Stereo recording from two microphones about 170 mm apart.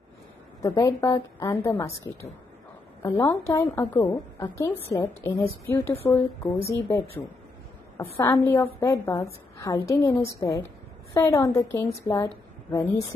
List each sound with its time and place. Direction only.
0.6 s a woman's voice: 20° left (ahead or behind)
3.0 s a woman's voice: 15° left (ahead or behind)